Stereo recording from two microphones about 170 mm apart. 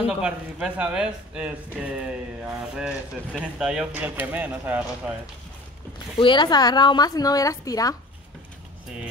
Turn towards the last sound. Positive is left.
turn(degrees=20)  # may be behind; listen again after turning